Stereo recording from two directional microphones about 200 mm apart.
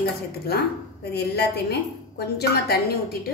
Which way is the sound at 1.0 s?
55° left (ahead or behind).